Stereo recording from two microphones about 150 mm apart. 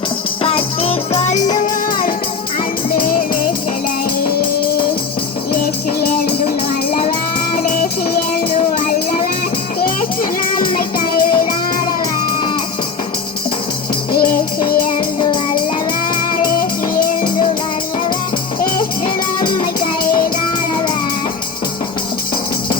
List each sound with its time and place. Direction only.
0.4 s music: 40° left (ahead or behind); by 2.1 s 60° left (ahead or behind)
7.7 s music: 70° left (ahead or behind)
10.9 s music: 75° left (ahead or behind)
14.1 s music: 85° left